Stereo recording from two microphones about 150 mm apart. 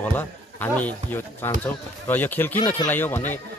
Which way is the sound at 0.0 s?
10° left (ahead or behind).